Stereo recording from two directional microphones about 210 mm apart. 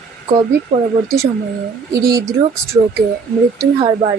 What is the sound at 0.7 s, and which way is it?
Speech, 25° right (ahead or behind).